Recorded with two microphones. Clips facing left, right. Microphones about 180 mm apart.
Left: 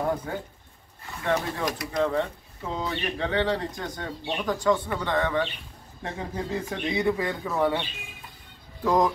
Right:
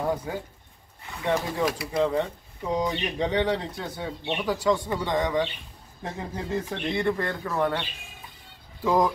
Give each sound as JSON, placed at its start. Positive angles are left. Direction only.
{"t": 0.3, "sound": "speech", "side_deg": -10}
{"t": 6.0, "sound": "speech", "side_deg": 0}
{"t": 8.8, "sound": "speech", "side_deg": -5}